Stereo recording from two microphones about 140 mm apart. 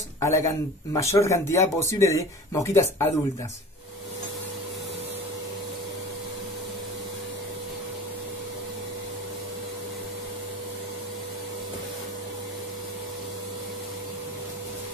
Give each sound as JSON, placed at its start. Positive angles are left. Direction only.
{"t": 0.2, "sound": "speech", "side_deg": 20}